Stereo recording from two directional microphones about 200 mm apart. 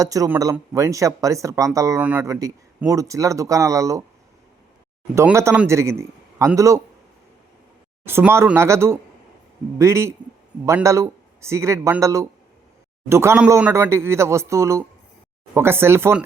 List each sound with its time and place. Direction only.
0.0 s speech: 15° right (ahead or behind)
5.1 s speech: 15° right (ahead or behind)
8.0 s speech: 10° right (ahead or behind)